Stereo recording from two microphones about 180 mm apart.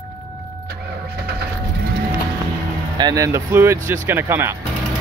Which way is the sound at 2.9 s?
20° right (ahead or behind).